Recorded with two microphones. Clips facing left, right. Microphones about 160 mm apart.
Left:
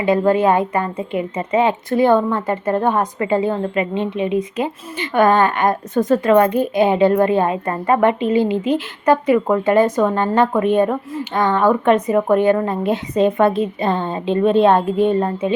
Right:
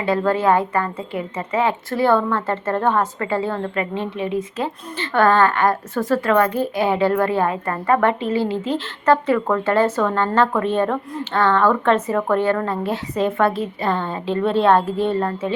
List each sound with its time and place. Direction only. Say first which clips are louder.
0.0 s a woman's voice: left 4 dB; 15° left (ahead or behind)